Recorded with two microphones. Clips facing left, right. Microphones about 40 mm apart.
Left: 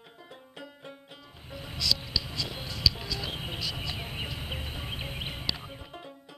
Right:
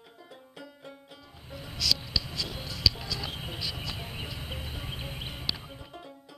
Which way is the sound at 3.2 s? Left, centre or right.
Centre.